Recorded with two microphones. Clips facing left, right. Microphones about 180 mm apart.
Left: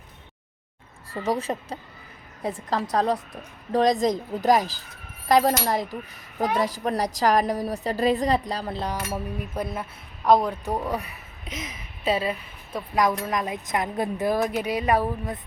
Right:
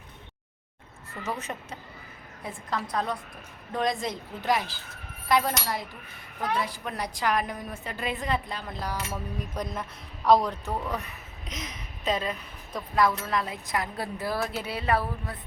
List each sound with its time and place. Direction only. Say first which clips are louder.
1.1 s a woman's voice: left 8 dB; 30° left (ahead or behind)
9.4 s a woman's voice: left 3 dB; 5° left (ahead or behind)